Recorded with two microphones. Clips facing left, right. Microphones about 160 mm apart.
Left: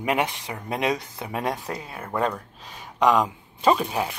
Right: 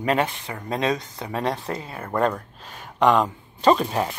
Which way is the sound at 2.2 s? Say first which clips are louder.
Right 3 dB; centre (ahead or behind).